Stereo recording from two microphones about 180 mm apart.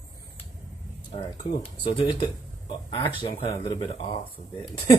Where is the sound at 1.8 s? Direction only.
25° left (ahead or behind).